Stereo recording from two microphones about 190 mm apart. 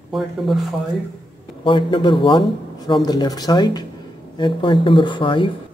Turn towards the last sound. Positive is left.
turn(degrees=25)  # may be behind; listen again after turning